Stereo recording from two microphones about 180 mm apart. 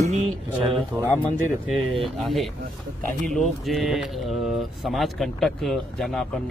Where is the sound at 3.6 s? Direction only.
Centre (ahead or behind).